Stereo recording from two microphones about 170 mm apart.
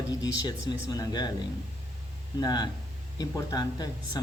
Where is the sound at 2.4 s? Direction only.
25° left (ahead or behind).